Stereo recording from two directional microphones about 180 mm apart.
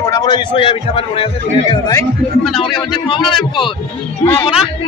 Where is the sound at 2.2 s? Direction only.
5° left (ahead or behind).